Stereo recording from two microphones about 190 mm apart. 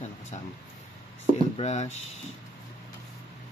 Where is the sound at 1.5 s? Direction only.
35° left (ahead or behind).